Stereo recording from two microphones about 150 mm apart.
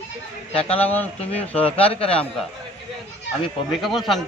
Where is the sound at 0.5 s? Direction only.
40° left (ahead or behind).